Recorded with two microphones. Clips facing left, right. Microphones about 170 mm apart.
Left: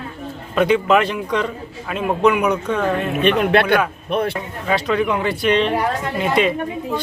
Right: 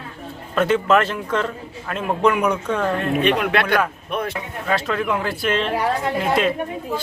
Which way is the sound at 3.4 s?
30° left (ahead or behind).